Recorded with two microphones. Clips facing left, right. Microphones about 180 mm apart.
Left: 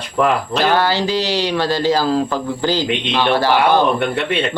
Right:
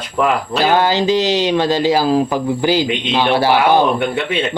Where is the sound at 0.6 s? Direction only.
15° right (ahead or behind).